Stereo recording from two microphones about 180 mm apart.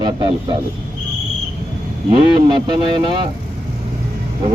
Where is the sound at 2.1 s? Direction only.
25° right (ahead or behind).